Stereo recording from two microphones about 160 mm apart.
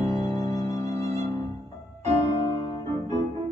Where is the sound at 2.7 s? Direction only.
25° left (ahead or behind).